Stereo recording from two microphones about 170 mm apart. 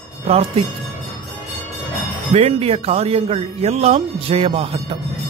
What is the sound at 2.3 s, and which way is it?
Speech, 35° right (ahead or behind).